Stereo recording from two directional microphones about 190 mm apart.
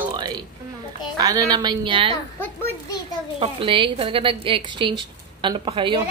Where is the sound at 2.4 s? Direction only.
10° left (ahead or behind).